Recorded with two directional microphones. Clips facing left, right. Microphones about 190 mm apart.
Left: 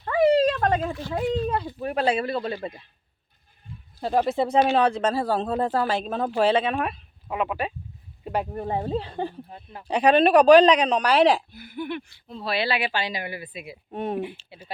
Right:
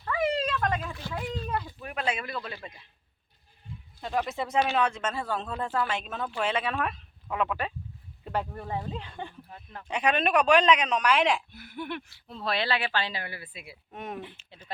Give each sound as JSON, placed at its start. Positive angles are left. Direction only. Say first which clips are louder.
{"t": 0.0, "sound": "speech", "louder": "left 9 dB", "side_deg": 35}
{"t": 4.0, "sound": "speech", "louder": "left 8 dB", "side_deg": 35}
{"t": 6.7, "sound": "speech", "louder": "left 4 dB", "side_deg": 15}
{"t": 8.2, "sound": "a sound", "louder": "left 4 dB", "side_deg": 15}
{"t": 8.4, "sound": "speech", "louder": "left 7 dB", "side_deg": 30}
{"t": 11.5, "sound": "speech", "louder": "left 5 dB", "side_deg": 0}
{"t": 13.9, "sound": "speech", "louder": "left 10 dB", "side_deg": 30}